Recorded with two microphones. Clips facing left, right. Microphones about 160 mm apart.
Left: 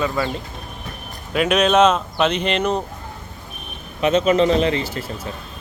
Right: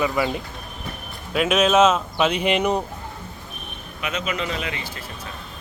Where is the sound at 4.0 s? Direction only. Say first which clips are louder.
Left 12 dB; 30° left (ahead or behind).